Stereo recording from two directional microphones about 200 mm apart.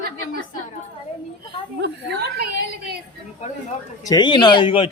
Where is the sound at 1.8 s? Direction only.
55° right (ahead or behind).